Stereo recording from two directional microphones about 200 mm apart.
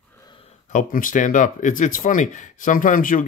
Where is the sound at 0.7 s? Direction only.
40° left (ahead or behind).